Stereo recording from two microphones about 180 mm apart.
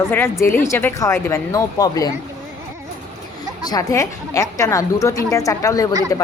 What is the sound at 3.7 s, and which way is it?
Speech, 20° left (ahead or behind).